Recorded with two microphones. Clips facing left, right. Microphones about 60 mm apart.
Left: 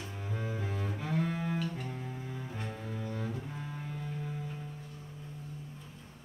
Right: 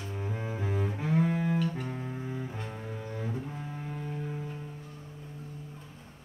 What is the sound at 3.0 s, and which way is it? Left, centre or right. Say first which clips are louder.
Cello: right 1 dB; centre.